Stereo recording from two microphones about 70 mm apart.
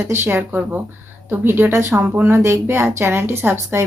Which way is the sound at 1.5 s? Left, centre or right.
Right.